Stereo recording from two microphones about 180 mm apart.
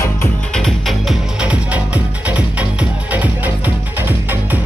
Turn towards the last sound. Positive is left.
turn(degrees=-10)  # may be behind; listen again after turning